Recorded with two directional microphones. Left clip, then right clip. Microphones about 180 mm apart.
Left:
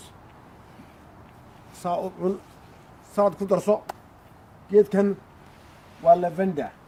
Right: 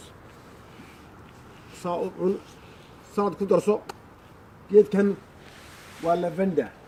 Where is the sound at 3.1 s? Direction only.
25° left (ahead or behind).